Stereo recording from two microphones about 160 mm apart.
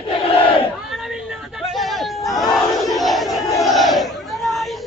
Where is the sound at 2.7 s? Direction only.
Centre (ahead or behind).